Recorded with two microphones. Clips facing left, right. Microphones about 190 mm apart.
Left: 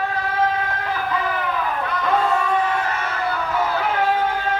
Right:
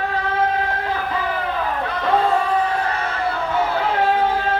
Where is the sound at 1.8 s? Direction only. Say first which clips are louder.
Right 2 dB; 30° right (ahead or behind).